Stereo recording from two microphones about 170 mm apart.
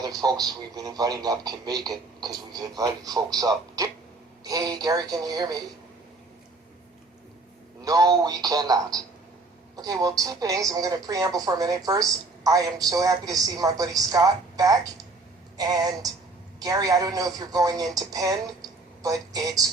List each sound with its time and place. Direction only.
0.0 s a woman's voice: 25° right (ahead or behind)
7.8 s a woman's voice: 20° right (ahead or behind)